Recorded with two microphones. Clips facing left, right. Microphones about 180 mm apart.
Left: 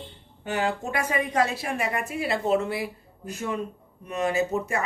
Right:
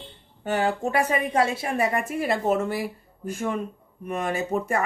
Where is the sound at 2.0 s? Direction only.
50° right (ahead or behind).